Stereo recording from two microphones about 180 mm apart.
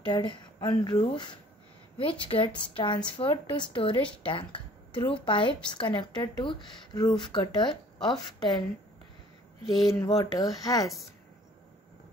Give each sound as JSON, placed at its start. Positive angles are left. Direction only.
{"t": 0.0, "sound": "speech", "side_deg": 25}
{"t": 10.0, "sound": "speech", "side_deg": 25}